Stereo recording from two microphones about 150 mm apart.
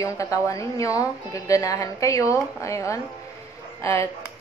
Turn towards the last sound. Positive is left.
turn(degrees=20)  # may be behind; listen again after turning